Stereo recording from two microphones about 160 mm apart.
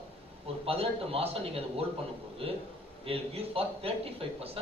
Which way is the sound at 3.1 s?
40° right (ahead or behind).